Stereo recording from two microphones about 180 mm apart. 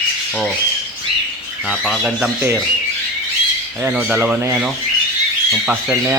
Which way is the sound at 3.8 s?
10° right (ahead or behind).